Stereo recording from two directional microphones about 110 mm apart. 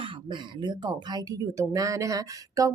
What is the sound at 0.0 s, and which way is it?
Speech, 45° right (ahead or behind).